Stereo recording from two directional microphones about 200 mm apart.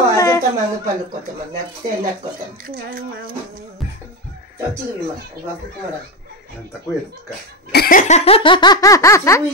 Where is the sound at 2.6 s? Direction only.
45° right (ahead or behind).